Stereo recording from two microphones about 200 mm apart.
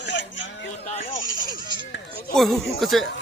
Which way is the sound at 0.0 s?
60° left (ahead or behind).